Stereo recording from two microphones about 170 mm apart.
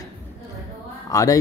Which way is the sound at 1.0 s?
20° left (ahead or behind).